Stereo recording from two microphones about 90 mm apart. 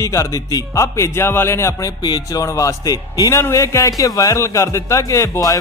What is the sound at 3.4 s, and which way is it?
Speech, 35° left (ahead or behind).